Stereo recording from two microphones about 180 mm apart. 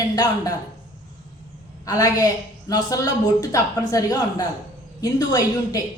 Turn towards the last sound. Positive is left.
turn(degrees=20)  # may be behind; listen again after turning